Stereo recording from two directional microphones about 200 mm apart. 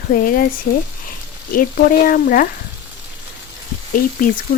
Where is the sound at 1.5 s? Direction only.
45° left (ahead or behind).